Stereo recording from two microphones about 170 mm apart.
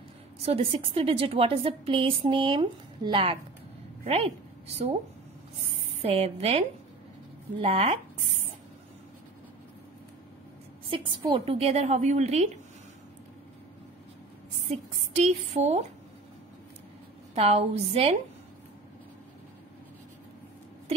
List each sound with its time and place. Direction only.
0.5 s a woman's voice: 35° right (ahead or behind)
6.0 s a woman's voice: 35° right (ahead or behind)
7.6 s a woman's voice: 35° right (ahead or behind)
10.9 s a woman's voice: 30° right (ahead or behind)
15.1 s a woman's voice: 40° right (ahead or behind)
17.4 s a woman's voice: 35° right (ahead or behind)